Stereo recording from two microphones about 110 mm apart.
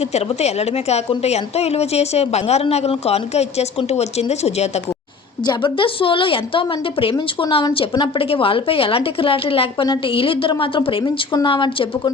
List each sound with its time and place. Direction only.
0.1 s a woman's voice: 80° left
5.5 s a woman's voice: 50° left (ahead or behind)